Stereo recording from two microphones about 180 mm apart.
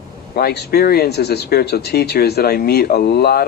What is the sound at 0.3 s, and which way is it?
Speech, 60° left (ahead or behind).